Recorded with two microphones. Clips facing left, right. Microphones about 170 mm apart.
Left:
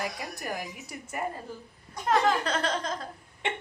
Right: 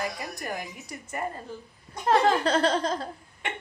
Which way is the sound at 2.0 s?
30° right (ahead or behind).